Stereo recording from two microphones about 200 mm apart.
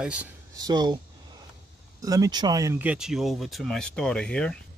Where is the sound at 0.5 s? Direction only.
20° right (ahead or behind).